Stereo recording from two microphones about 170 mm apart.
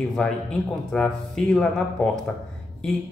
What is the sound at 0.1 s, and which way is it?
Speech, 5° left (ahead or behind).